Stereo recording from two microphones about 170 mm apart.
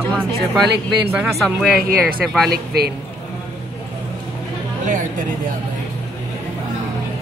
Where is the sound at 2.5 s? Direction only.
65° right (ahead or behind).